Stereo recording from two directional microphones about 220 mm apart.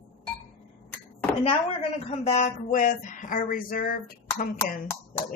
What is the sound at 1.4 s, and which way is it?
Speech, 25° left (ahead or behind).